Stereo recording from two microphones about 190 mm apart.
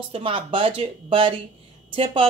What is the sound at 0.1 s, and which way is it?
A woman's voice, 30° right (ahead or behind).